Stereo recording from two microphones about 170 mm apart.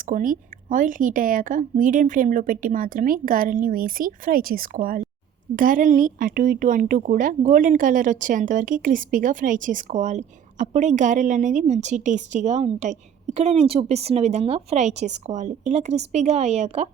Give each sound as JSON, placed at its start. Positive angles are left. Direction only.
{"t": 0.0, "sound": "speech", "side_deg": -55}